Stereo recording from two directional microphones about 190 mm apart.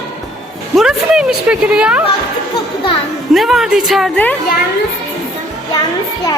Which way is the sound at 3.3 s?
Centre (ahead or behind).